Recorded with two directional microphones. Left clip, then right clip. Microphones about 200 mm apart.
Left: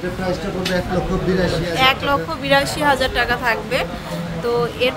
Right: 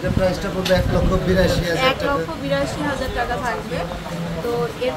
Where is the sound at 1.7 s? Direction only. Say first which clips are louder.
Left 6 dB; 30° left (ahead or behind).